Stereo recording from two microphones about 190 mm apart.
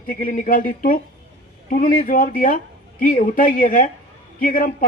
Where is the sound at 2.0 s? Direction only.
45° left (ahead or behind).